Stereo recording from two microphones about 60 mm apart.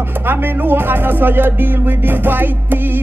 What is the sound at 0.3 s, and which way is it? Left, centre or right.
Music, right.